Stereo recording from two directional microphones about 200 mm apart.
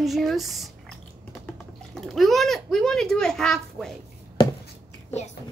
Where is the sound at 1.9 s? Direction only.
Centre (ahead or behind).